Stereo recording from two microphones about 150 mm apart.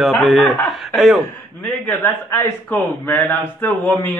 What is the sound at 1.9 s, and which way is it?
Speech, 15° left (ahead or behind).